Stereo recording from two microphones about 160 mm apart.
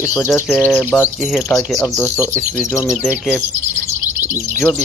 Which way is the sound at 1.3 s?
Centre (ahead or behind).